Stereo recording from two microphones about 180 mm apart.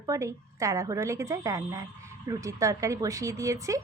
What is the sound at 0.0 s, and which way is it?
Speech, 15° right (ahead or behind).